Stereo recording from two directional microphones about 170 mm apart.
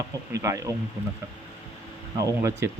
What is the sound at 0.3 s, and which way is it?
Speech, 20° right (ahead or behind).